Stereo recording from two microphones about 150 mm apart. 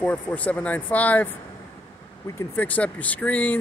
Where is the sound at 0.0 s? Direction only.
10° left (ahead or behind).